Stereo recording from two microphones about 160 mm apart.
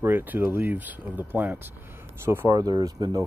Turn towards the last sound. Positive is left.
turn(degrees=-25)  # may be behind; listen again after turning